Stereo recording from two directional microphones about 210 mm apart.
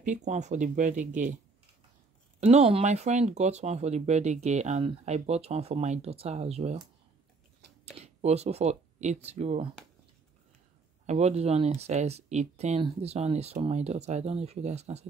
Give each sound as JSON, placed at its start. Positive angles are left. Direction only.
{"t": 0.0, "sound": "speech", "side_deg": -35}
{"t": 2.4, "sound": "speech", "side_deg": -30}
{"t": 7.8, "sound": "speech", "side_deg": -30}
{"t": 11.1, "sound": "speech", "side_deg": -30}